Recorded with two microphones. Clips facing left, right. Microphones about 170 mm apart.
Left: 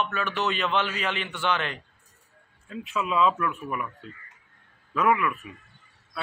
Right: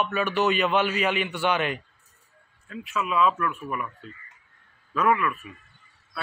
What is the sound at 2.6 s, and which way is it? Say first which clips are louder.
Speech: even; 20° left (ahead or behind).